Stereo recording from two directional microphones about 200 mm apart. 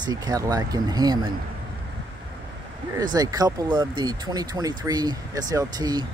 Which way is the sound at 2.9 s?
20° right (ahead or behind).